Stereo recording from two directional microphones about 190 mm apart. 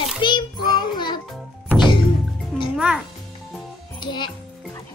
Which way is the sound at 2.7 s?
5° right (ahead or behind).